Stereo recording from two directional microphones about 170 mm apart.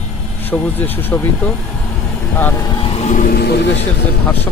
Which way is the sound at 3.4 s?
70° left (ahead or behind).